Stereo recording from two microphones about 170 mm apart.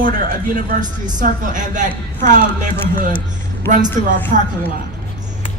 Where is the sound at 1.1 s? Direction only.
50° right (ahead or behind).